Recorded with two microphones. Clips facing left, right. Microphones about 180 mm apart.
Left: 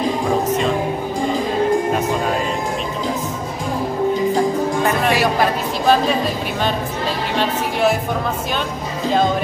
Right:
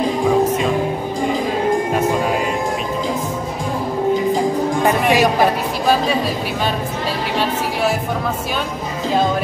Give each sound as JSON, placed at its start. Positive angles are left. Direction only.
{"t": 4.8, "sound": "music", "side_deg": -15}